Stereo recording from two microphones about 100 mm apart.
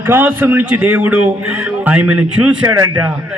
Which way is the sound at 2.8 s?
45° right (ahead or behind).